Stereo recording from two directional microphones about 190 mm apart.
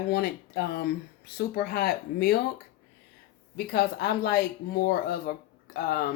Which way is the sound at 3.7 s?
55° left (ahead or behind).